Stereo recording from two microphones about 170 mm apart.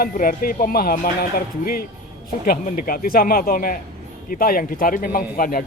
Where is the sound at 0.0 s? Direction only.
55° left (ahead or behind).